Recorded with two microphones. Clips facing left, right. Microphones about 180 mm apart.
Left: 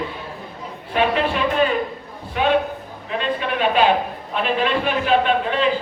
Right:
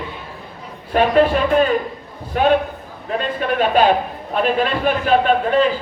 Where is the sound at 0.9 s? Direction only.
45° right (ahead or behind).